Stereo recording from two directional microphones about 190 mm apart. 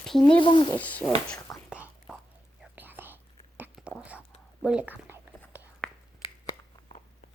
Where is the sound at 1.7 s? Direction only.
5° right (ahead or behind).